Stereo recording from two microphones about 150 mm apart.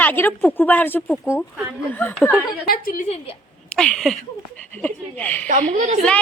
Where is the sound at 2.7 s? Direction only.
65° left (ahead or behind).